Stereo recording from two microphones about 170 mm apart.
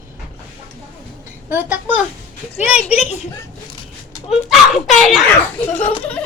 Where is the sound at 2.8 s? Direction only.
40° left (ahead or behind).